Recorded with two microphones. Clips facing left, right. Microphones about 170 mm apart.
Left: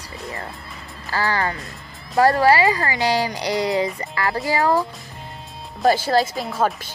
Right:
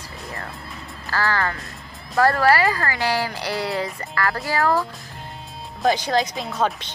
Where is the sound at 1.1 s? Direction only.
15° left (ahead or behind).